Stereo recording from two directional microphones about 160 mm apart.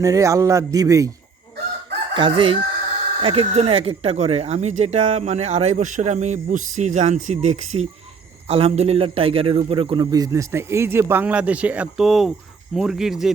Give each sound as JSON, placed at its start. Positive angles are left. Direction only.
{"t": 0.0, "sound": "a man's voice", "side_deg": -20}
{"t": 2.1, "sound": "chicken", "side_deg": -30}
{"t": 3.2, "sound": "a man's voice", "side_deg": -35}